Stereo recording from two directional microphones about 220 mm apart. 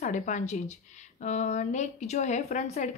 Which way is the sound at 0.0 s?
35° left (ahead or behind).